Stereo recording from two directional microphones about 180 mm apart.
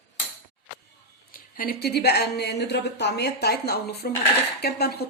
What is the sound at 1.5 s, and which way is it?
Speech, 55° left (ahead or behind).